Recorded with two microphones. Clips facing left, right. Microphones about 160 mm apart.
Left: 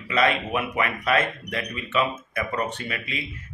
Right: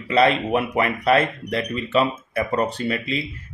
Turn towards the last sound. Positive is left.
turn(degrees=-30)  # may be behind; listen again after turning